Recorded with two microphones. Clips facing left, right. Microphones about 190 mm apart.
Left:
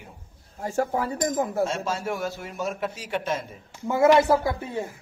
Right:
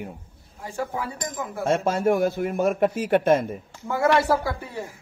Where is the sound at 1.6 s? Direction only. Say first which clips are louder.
Right 7 dB; 55° right (ahead or behind).